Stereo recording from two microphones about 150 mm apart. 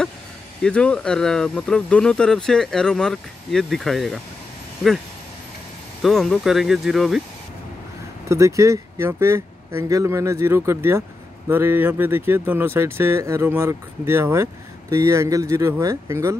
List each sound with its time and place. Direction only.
0.7 s speech: 5° left (ahead or behind)
6.0 s speech: centre (ahead or behind)
8.3 s speech: 20° right (ahead or behind)